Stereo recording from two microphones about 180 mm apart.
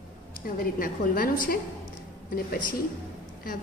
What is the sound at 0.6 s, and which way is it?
A woman's voice, 50° left (ahead or behind).